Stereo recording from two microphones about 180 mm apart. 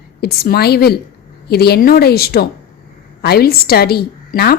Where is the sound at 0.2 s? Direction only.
60° left (ahead or behind).